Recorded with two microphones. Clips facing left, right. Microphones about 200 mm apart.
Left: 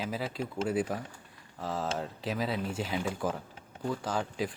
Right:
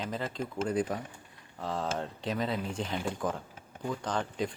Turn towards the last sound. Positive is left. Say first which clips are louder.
# even
turn(degrees=5)  # may be behind; listen again after turning